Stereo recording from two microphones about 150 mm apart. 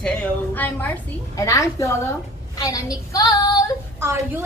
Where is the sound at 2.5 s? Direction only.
25° left (ahead or behind).